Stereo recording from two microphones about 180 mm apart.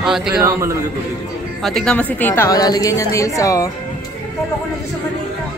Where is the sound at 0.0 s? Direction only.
5° right (ahead or behind).